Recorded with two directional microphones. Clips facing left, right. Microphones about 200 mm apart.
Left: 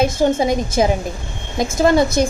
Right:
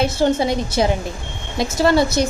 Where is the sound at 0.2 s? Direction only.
15° left (ahead or behind).